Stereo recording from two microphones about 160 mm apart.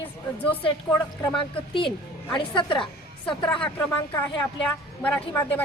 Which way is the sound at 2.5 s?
30° left (ahead or behind).